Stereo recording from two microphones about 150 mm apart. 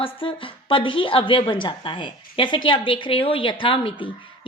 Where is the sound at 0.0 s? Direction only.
35° left (ahead or behind).